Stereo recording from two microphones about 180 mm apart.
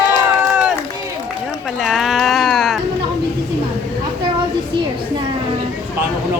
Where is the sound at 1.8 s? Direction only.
Centre (ahead or behind).